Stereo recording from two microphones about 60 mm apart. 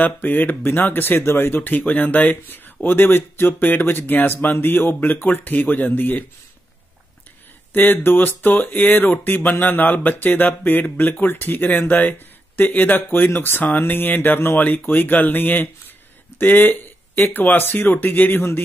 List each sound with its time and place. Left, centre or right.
0.0 s speech: left
7.7 s speech: left
16.3 s a sound: left
17.3 s speech: left